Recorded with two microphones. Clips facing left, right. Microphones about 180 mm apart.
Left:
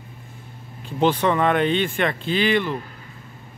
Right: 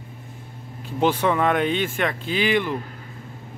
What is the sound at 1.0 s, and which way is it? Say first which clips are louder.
Speech: left 1 dB; 10° right (ahead or behind).